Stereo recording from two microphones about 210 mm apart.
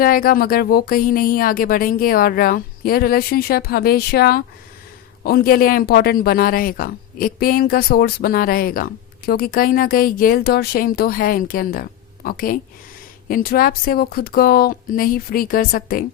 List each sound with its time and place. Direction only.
0.0 s speech: 45° left (ahead or behind)